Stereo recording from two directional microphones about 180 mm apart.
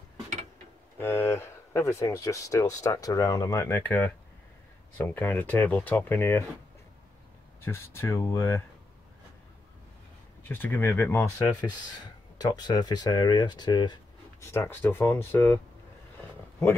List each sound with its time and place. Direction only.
0.9 s speech: 10° left (ahead or behind)
7.6 s speech: 15° left (ahead or behind)
10.5 s speech: 10° left (ahead or behind)